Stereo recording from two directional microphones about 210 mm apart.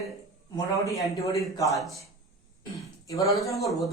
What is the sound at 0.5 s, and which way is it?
A woman's voice, 15° left (ahead or behind).